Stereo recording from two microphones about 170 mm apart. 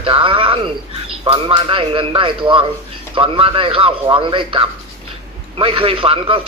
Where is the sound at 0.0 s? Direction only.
30° right (ahead or behind).